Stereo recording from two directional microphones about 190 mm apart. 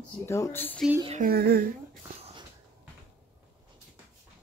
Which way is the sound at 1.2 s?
55° right (ahead or behind).